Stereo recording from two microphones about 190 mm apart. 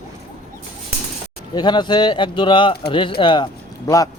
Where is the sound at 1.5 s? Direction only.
25° left (ahead or behind).